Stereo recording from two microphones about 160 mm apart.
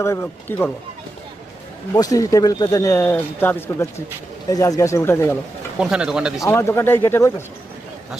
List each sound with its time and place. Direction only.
0.0 s speech: 15° left (ahead or behind)
2.0 s speech: 20° left (ahead or behind)
5.8 s speech: 5° right (ahead or behind)
6.4 s speech: 15° left (ahead or behind)